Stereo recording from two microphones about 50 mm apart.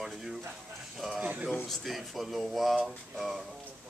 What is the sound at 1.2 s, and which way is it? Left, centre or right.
Speech, right.